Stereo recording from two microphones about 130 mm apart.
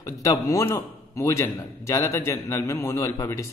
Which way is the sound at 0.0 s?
25° left (ahead or behind).